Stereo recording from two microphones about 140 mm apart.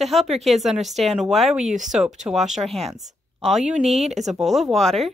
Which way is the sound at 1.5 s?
55° right (ahead or behind).